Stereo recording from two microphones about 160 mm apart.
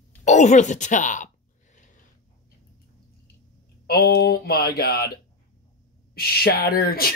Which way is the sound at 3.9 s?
85° left.